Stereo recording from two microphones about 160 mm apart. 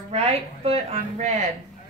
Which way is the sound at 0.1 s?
40° right (ahead or behind).